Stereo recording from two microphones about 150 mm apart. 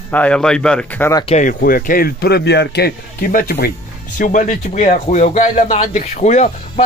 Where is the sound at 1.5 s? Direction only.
70° left (ahead or behind).